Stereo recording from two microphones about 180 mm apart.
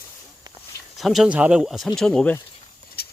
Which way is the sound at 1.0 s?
Centre (ahead or behind).